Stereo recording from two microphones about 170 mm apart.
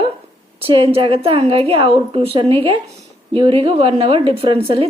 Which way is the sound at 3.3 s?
30° right (ahead or behind).